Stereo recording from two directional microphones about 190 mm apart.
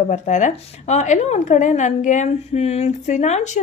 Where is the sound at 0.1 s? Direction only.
40° left (ahead or behind).